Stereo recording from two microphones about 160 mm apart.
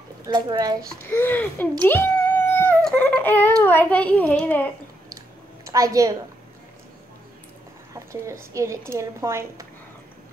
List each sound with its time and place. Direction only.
0.3 s a woman's voice: 25° right (ahead or behind)
1.1 s a child's voice: 10° left (ahead or behind)
1.9 s cat: 15° left (ahead or behind)
2.8 s a sound: 5° left (ahead or behind)
3.6 s a child's voice: 10° left (ahead or behind)
5.7 s a woman's voice: 20° right (ahead or behind)
7.9 s a woman's voice: 20° right (ahead or behind)